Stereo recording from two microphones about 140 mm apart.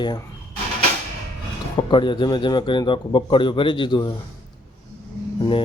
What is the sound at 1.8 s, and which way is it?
A man's voice, 35° left (ahead or behind).